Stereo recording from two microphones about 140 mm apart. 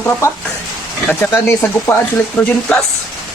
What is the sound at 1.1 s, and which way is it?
Speech, 15° left (ahead or behind).